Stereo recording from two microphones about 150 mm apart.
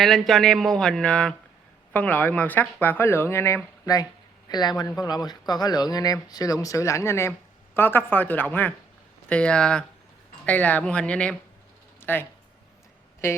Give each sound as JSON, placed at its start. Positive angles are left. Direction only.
{"t": 0.0, "sound": "speech", "side_deg": 0}
{"t": 13.2, "sound": "speech", "side_deg": 20}